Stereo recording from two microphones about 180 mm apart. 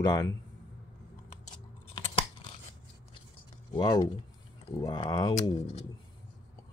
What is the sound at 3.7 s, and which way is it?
Speech, 25° left (ahead or behind).